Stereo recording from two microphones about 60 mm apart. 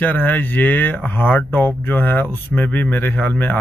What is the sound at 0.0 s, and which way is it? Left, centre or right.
Speech, left.